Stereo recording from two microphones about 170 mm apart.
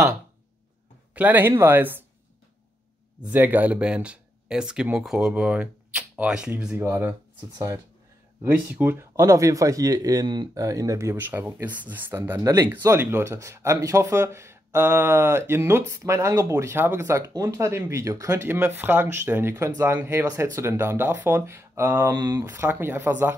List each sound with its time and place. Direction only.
1.1 s speech: 10° right (ahead or behind)
3.3 s speech: 10° right (ahead or behind)